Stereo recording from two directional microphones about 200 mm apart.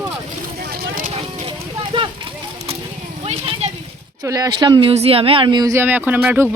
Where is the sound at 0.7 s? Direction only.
45° right (ahead or behind).